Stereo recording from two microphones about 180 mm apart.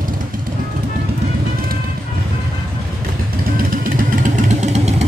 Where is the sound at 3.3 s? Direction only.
50° right (ahead or behind).